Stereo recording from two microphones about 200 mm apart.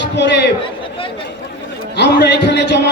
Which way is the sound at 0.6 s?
25° left (ahead or behind).